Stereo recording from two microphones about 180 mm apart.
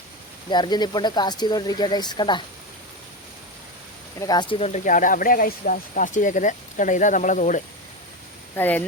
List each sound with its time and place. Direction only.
0.5 s speech: 25° left (ahead or behind)
4.2 s speech: 20° left (ahead or behind); by 7.6 s 45° left (ahead or behind)
8.5 s speech: 10° left (ahead or behind)